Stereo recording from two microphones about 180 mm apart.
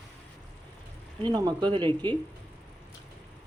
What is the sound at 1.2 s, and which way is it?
Speech, 25° right (ahead or behind).